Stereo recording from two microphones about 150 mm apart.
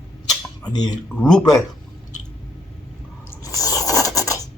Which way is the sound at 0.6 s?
25° left (ahead or behind).